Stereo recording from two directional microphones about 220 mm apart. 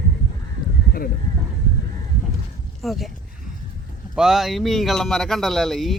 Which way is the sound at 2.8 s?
Centre (ahead or behind).